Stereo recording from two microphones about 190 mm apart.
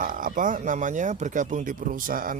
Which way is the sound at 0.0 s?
45° right (ahead or behind).